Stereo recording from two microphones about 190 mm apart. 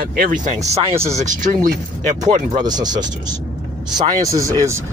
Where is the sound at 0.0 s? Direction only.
50° right (ahead or behind).